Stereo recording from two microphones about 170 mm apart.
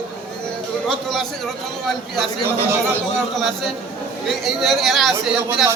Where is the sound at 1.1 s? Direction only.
Centre (ahead or behind).